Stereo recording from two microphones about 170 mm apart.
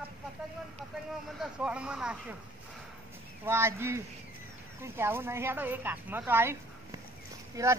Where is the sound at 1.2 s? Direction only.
Centre (ahead or behind).